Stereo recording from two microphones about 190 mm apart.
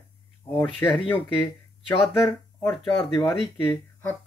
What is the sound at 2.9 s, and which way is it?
Speech, 30° left (ahead or behind).